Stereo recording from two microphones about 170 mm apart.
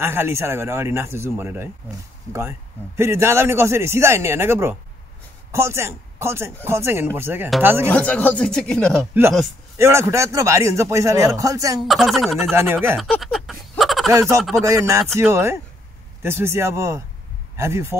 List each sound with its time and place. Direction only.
0.0 s a man's voice: 15° right (ahead or behind)
3.0 s a man's voice: 15° right (ahead or behind)
7.9 s speech: 10° left (ahead or behind)
9.8 s a man's voice: 15° right (ahead or behind)
11.8 s speech: centre (ahead or behind)
12.9 s a sound: centre (ahead or behind)
14.6 s a man's voice: 20° right (ahead or behind)